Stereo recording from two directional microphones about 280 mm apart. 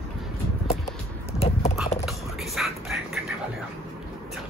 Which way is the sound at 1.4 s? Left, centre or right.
Left.